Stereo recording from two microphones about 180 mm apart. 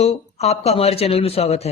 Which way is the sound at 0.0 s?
35° left (ahead or behind).